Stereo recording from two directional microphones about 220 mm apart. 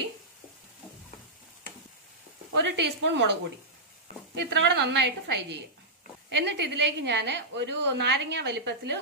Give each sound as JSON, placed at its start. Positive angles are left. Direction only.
{"t": 2.5, "sound": "a woman's voice", "side_deg": -50}
{"t": 4.4, "sound": "a woman's voice", "side_deg": -50}